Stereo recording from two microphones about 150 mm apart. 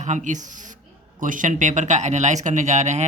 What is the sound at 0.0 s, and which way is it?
Speech, 50° right (ahead or behind).